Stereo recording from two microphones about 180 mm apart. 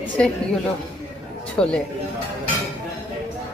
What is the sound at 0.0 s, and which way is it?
Speech, 5° left (ahead or behind).